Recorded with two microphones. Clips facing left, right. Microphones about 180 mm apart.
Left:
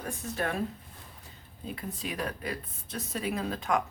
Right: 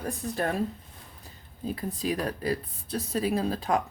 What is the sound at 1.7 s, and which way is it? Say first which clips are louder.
Speech: right 5 dB; 35° right (ahead or behind).